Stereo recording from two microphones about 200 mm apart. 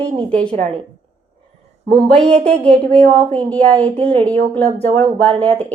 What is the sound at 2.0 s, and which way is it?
A woman's voice, 5° left (ahead or behind).